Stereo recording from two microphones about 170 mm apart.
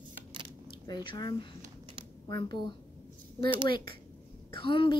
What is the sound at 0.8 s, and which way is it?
Speech, 25° left (ahead or behind).